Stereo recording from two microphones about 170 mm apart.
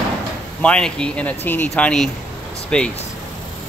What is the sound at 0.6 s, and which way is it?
Speech, 5° left (ahead or behind).